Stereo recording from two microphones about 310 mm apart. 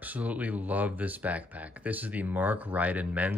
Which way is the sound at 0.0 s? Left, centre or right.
Centre.